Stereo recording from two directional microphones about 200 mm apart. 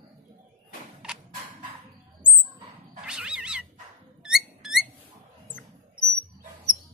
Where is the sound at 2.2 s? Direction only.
5° right (ahead or behind).